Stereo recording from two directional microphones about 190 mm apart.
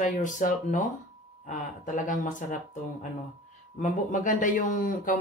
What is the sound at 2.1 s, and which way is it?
A man's voice, 45° left (ahead or behind).